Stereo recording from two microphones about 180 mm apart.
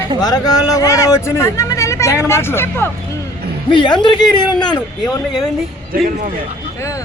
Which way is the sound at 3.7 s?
25° left (ahead or behind).